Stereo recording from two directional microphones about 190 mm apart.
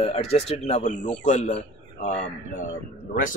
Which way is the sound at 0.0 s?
35° left (ahead or behind).